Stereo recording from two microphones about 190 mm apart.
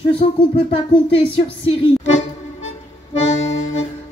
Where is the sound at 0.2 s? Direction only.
35° left (ahead or behind).